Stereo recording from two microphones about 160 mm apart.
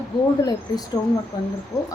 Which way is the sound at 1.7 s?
20° left (ahead or behind).